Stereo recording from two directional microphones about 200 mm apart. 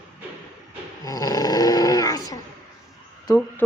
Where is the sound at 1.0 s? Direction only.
15° left (ahead or behind).